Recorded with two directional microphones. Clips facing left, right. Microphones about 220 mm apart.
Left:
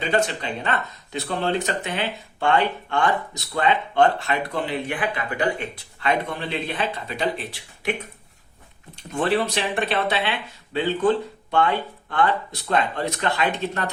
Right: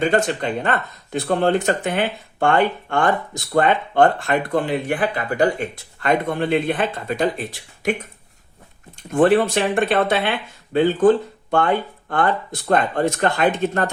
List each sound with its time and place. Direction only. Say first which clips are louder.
0.0 s speech: right 4 dB; 50° right (ahead or behind)
9.1 s speech: right 7 dB; 50° right (ahead or behind)